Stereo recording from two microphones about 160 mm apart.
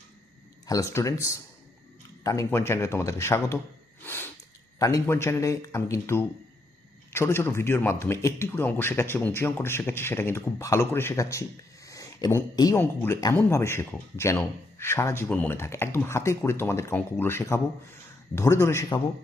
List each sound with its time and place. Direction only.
0.7 s speech: 20° left (ahead or behind)
4.0 s snort: 15° left (ahead or behind)
4.8 s speech: 20° left (ahead or behind)